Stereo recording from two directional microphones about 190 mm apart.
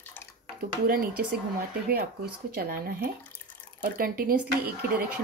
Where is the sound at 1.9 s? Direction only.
55° right (ahead or behind).